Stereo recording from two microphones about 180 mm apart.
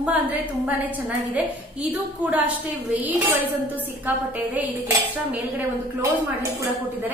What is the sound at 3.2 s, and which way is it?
Speech, 10° right (ahead or behind).